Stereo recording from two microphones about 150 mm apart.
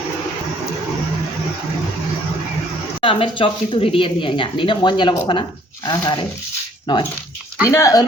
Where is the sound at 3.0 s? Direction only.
35° left (ahead or behind).